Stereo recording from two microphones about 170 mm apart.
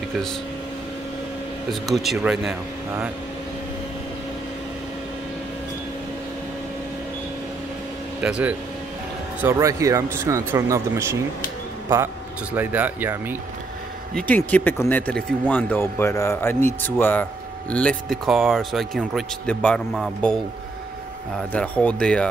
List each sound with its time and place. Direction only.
1.7 s speech: centre (ahead or behind)
8.2 s speech: 5° right (ahead or behind)
12.5 s speech: 10° right (ahead or behind)
14.1 s speech: 10° left (ahead or behind)
21.4 s speech: 5° left (ahead or behind)